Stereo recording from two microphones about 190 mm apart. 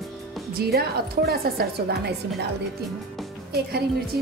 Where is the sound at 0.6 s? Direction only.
55° right (ahead or behind).